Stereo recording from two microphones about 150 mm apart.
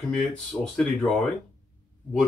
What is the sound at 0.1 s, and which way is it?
Speech, 5° left (ahead or behind).